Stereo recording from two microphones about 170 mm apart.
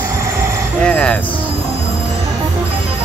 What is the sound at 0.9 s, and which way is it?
Music, 5° left (ahead or behind).